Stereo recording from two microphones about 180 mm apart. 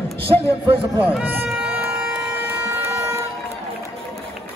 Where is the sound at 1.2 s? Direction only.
10° right (ahead or behind).